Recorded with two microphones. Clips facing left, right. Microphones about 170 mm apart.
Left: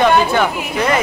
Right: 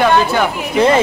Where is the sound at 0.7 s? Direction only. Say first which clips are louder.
Right 6 dB; 30° right (ahead or behind).